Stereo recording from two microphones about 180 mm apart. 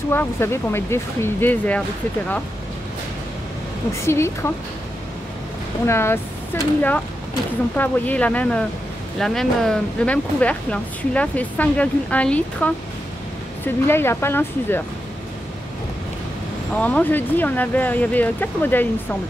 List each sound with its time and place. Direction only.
0.1 s speech: 15° left (ahead or behind)
3.9 s speech: 15° left (ahead or behind)
5.9 s speech: 15° left (ahead or behind)
16.7 s speech: 10° left (ahead or behind)